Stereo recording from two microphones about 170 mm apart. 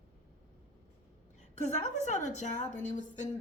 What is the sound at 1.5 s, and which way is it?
Speech, 45° left (ahead or behind).